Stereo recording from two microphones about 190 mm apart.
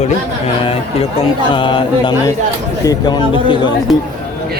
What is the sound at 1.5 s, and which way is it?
Speech, 25° left (ahead or behind).